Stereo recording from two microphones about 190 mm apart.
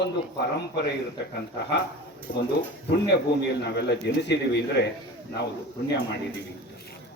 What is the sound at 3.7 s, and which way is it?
A man's voice, 60° left (ahead or behind).